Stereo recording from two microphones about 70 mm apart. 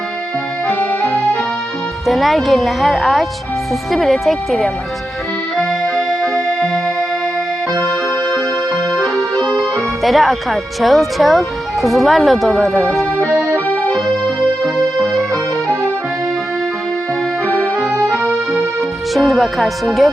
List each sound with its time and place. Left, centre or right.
0.7 s accordion: left
2.0 s speech: centre
5.5 s accordion: centre
9.1 s speech: centre
13.7 s music: left
17.9 s music: right
19.1 s speech: centre